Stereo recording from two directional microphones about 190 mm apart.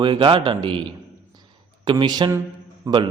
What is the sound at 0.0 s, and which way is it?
A man's voice, 25° right (ahead or behind).